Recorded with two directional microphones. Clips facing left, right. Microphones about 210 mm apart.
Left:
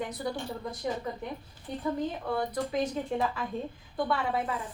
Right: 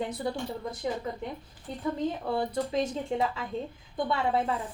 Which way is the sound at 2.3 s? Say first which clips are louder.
Right 1 dB; 25° right (ahead or behind).